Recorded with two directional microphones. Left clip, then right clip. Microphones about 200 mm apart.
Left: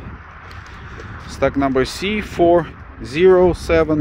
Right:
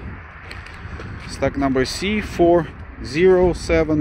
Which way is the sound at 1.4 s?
15° left (ahead or behind).